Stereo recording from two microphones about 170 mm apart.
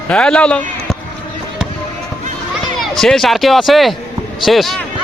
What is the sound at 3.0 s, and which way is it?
Speech, centre (ahead or behind).